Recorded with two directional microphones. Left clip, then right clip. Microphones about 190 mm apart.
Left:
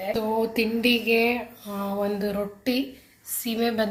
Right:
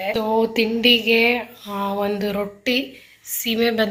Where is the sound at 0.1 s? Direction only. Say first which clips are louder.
Right 5 dB; 5° left (ahead or behind).